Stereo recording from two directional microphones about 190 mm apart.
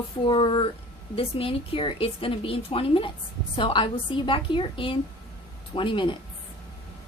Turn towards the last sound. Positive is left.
turn(degrees=25)  # may be behind; listen again after turning